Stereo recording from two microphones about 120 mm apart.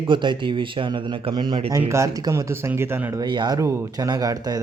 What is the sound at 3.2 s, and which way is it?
Speech, 40° right (ahead or behind).